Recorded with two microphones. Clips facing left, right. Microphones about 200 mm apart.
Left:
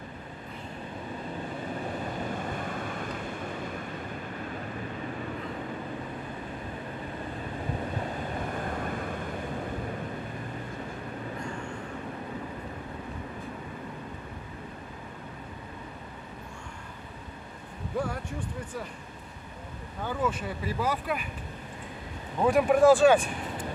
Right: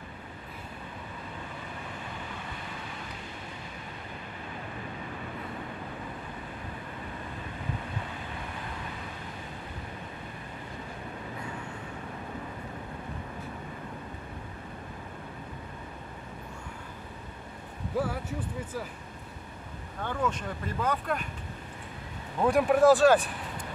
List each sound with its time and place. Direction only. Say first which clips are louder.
2.0 s vehicle: left 8 dB; 45° left (ahead or behind)
8.4 s vehicle: left 7 dB; 50° left (ahead or behind)
17.9 s a sound: right 1 dB; 5° right (ahead or behind)
20.0 s speech: left 1 dB; 5° left (ahead or behind)
22.4 s speech: left 1 dB; centre (ahead or behind)